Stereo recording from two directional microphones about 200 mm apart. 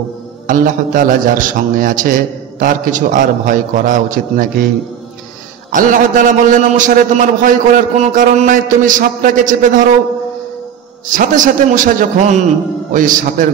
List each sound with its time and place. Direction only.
0.5 s a man's voice: 40° right (ahead or behind)
5.7 s a man's voice: 40° right (ahead or behind)
11.1 s a man's voice: 40° right (ahead or behind)